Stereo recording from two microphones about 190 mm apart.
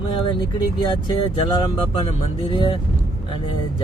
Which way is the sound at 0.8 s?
25° left (ahead or behind).